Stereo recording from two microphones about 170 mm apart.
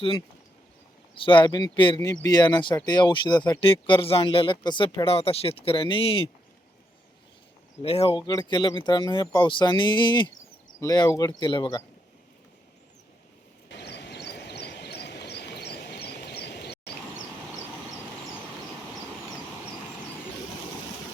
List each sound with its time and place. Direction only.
1.1 s speech: 30° left (ahead or behind)
7.8 s speech: 35° left (ahead or behind)
13.7 s vehicle: 80° left